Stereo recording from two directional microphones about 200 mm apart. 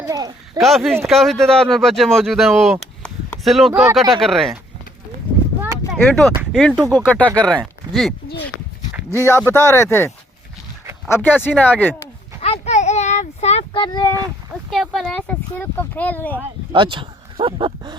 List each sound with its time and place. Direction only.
0.0 s a sound: 20° right (ahead or behind)
0.6 s speech: centre (ahead or behind)
3.0 s a sound: 5° left (ahead or behind)
3.7 s speech: 15° right (ahead or behind)
4.1 s speech: centre (ahead or behind)
5.9 s speech: 5° left (ahead or behind)
9.1 s speech: 15° left (ahead or behind)
11.1 s speech: 10° left (ahead or behind)
12.4 s a sound: 35° left (ahead or behind)
14.7 s speech: centre (ahead or behind)
16.7 s speech: 25° right (ahead or behind)